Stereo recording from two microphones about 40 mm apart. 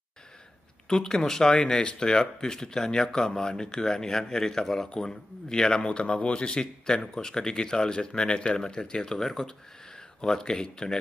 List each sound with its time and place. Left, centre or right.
0.8 s speech: centre